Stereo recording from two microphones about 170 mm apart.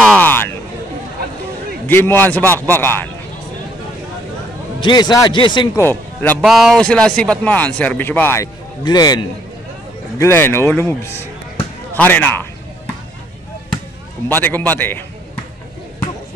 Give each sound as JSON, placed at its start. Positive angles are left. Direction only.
{"t": 0.0, "sound": "a sound", "side_deg": 10}
{"t": 1.9, "sound": "speech", "side_deg": 10}
{"t": 4.8, "sound": "speech", "side_deg": 25}
{"t": 5.8, "sound": "speech", "side_deg": 15}
{"t": 6.4, "sound": "speech", "side_deg": 0}
{"t": 8.8, "sound": "speech", "side_deg": 25}
{"t": 14.3, "sound": "speech", "side_deg": 10}